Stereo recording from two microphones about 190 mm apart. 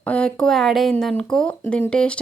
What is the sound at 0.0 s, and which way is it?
Speech, 5° left (ahead or behind).